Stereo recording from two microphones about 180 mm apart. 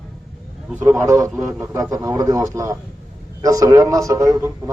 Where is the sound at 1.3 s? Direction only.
5° right (ahead or behind).